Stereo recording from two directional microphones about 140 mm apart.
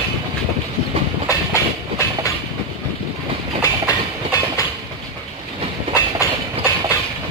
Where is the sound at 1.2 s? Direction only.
20° left (ahead or behind).